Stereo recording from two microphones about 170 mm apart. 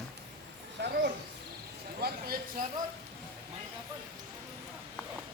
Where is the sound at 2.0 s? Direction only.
65° right (ahead or behind).